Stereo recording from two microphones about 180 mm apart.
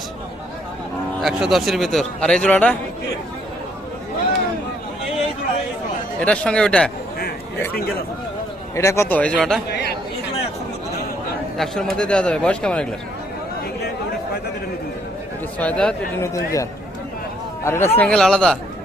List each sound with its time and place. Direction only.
1.2 s a man's voice: centre (ahead or behind)
6.1 s a man's voice: 5° left (ahead or behind)
8.7 s speech: 15° left (ahead or behind)
11.5 s a man's voice: centre (ahead or behind)
15.5 s speech: 5° left (ahead or behind)
16.2 s speech: 20° left (ahead or behind)
17.7 s speech: 15° left (ahead or behind)